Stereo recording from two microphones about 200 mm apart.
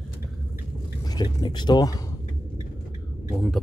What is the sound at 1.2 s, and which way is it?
Speech, 20° left (ahead or behind).